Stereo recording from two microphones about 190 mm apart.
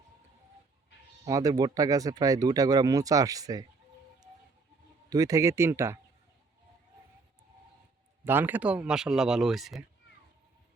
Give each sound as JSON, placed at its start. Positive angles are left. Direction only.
{"t": 1.2, "sound": "speech", "side_deg": -20}
{"t": 5.0, "sound": "speech", "side_deg": -20}
{"t": 8.2, "sound": "speech", "side_deg": -10}